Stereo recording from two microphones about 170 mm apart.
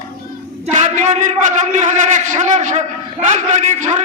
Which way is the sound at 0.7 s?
45° right (ahead or behind).